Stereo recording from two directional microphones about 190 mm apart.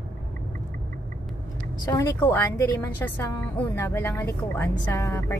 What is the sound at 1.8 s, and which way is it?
A woman's voice, 15° left (ahead or behind).